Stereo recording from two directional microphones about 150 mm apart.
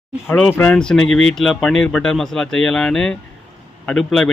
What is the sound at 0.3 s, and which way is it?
A man's voice, 10° left (ahead or behind).